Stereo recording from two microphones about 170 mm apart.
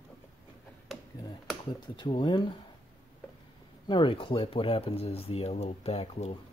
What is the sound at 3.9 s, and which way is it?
Speech, 30° left (ahead or behind).